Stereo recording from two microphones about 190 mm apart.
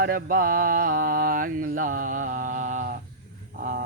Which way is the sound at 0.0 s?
50° right (ahead or behind).